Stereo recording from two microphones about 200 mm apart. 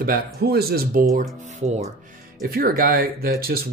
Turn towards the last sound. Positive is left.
turn(degrees=-50)  # may be behind; listen again after turning